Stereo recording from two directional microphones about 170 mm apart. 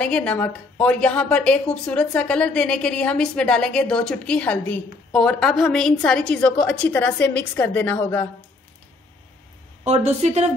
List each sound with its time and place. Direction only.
0.0 s a woman's voice: 5° left (ahead or behind)
9.8 s a woman's voice: 35° right (ahead or behind)